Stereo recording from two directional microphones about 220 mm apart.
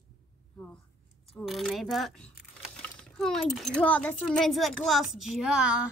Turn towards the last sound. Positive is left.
turn(degrees=-5)  # may be behind; listen again after turning